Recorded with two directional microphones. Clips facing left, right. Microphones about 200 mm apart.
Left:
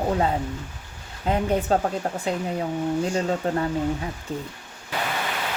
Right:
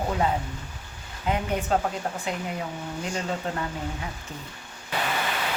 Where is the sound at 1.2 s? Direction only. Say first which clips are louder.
Left 4 dB; 35° left (ahead or behind).